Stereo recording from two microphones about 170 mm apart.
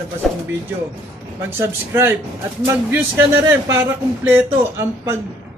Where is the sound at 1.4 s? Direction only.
15° right (ahead or behind).